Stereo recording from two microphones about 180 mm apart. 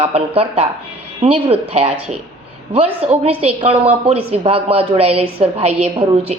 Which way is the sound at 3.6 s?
35° right (ahead or behind).